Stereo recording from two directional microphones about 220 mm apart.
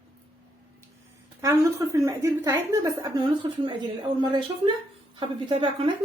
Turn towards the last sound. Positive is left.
turn(degrees=-25)  # may be behind; listen again after turning